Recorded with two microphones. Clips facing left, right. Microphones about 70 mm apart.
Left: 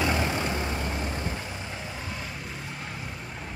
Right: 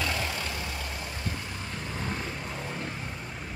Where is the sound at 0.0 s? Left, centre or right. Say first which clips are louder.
Left 5 dB; left.